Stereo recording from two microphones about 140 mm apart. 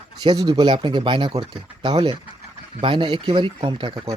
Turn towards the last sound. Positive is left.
turn(degrees=-30)  # may be behind; listen again after turning